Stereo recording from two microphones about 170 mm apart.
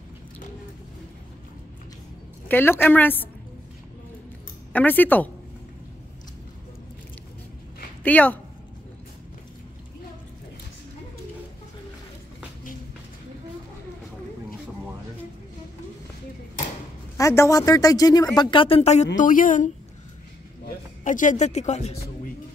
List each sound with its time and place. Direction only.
2.4 s a woman's voice: 10° left (ahead or behind)
4.7 s a woman's voice: 10° left (ahead or behind)
8.0 s speech: 10° left (ahead or behind)
17.2 s speech: 15° left (ahead or behind); by 19.0 s 40° left (ahead or behind)
19.1 s a woman's voice: 50° left (ahead or behind)